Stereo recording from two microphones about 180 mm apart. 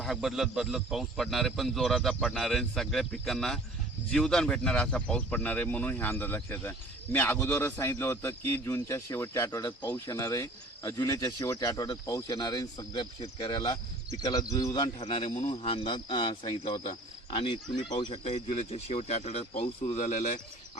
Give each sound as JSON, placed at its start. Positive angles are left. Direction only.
{"t": 0.0, "sound": "a man's voice", "side_deg": 0}
{"t": 15.0, "sound": "speech", "side_deg": 35}